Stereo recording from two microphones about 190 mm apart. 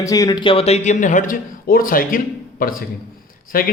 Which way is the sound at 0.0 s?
20° left (ahead or behind).